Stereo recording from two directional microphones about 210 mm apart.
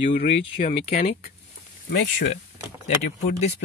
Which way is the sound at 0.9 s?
45° left (ahead or behind).